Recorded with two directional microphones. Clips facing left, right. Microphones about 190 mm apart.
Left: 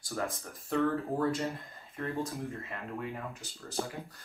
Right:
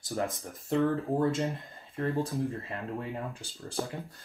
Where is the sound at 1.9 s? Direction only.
30° right (ahead or behind).